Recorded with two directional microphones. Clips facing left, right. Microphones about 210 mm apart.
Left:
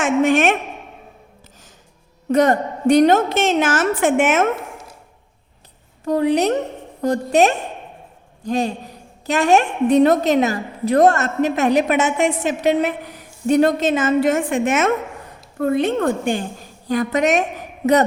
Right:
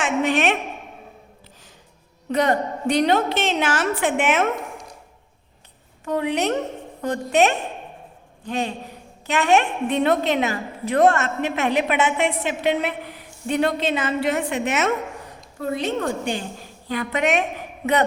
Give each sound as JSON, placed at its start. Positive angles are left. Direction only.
{"t": 0.0, "sound": "a sound", "side_deg": 50}
{"t": 2.3, "sound": "a woman's voice", "side_deg": 50}
{"t": 6.1, "sound": "a woman's voice", "side_deg": 35}